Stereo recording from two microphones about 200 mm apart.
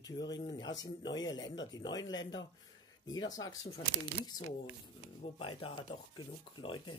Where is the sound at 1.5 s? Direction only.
65° left (ahead or behind).